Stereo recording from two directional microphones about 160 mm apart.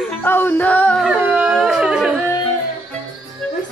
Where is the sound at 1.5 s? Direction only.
Centre (ahead or behind).